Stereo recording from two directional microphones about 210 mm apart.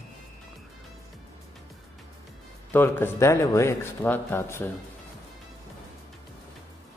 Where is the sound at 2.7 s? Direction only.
10° left (ahead or behind).